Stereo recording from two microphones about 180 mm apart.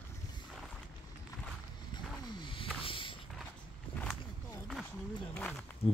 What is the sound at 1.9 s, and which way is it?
Vehicle, 25° left (ahead or behind).